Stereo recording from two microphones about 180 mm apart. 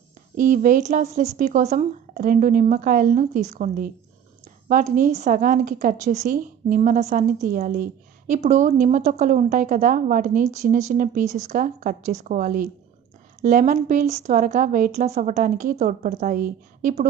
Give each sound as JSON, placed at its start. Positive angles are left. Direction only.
{"t": 0.4, "sound": "a woman's voice", "side_deg": -45}